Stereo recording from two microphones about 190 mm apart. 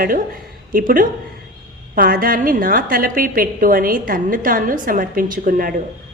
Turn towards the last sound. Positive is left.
turn(degrees=-50)  # may be behind; listen again after turning